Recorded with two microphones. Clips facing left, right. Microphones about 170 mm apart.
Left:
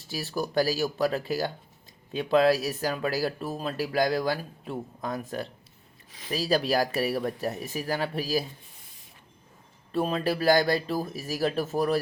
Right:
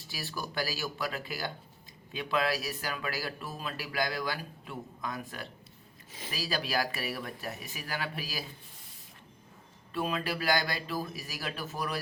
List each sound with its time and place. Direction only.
0.1 s speech: 35° left (ahead or behind)
9.9 s speech: 35° left (ahead or behind)